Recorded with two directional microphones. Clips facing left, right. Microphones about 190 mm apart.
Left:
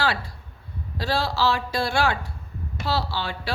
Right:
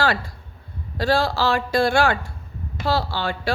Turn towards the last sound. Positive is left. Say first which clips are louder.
# right 5 dB
turn(degrees=-50)  # may be behind; listen again after turning